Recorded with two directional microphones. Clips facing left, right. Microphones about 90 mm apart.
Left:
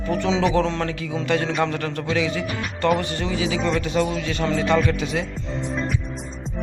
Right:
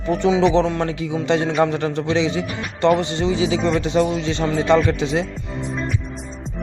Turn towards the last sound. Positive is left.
turn(degrees=-25)  # may be behind; listen again after turning